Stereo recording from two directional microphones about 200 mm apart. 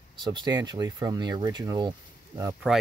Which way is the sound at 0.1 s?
25° right (ahead or behind).